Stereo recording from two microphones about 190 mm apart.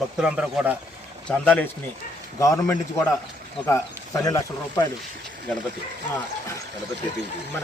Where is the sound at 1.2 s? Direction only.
5° left (ahead or behind).